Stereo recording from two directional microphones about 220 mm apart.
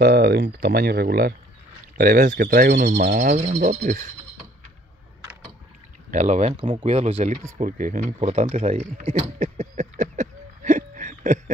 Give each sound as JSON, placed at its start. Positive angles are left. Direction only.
{"t": 0.0, "sound": "speech", "side_deg": -45}
{"t": 6.0, "sound": "speech", "side_deg": -30}
{"t": 7.5, "sound": "a sound", "side_deg": -35}